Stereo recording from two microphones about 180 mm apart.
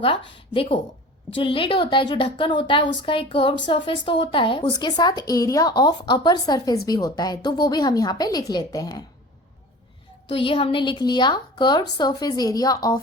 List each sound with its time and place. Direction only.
0.5 s speech: 30° left (ahead or behind)
10.2 s speech: 30° left (ahead or behind)